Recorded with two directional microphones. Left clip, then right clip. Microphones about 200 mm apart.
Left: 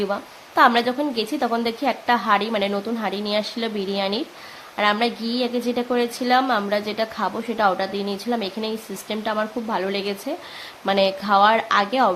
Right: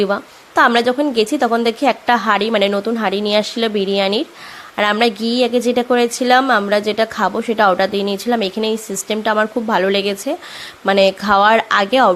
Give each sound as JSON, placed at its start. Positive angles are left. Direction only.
{"t": 0.0, "sound": "a woman's voice", "side_deg": -30}